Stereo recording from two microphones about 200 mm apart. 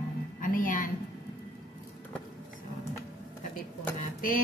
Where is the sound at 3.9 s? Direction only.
45° left (ahead or behind).